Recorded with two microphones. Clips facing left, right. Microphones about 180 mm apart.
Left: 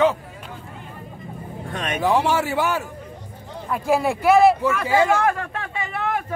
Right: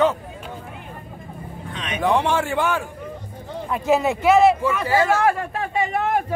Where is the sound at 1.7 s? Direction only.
50° left (ahead or behind).